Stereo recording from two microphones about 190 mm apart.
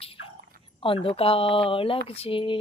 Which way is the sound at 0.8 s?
30° left (ahead or behind).